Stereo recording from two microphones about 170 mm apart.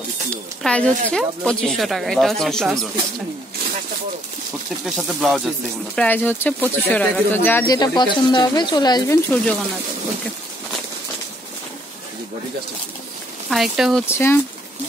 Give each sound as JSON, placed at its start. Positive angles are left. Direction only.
{"t": 0.3, "sound": "a woman's voice", "side_deg": 5}
{"t": 4.8, "sound": "a woman's voice", "side_deg": 0}
{"t": 5.9, "sound": "speech", "side_deg": 10}
{"t": 13.5, "sound": "a woman's voice", "side_deg": 0}
{"t": 14.0, "sound": "speech", "side_deg": 15}